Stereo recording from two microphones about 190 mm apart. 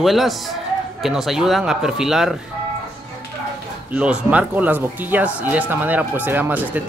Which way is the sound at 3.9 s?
5° right (ahead or behind).